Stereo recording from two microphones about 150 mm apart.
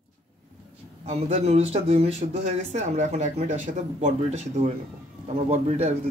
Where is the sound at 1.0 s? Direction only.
45° right (ahead or behind).